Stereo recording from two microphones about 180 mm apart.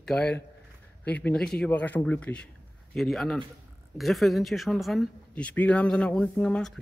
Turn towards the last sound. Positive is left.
turn(degrees=5)  # may be behind; listen again after turning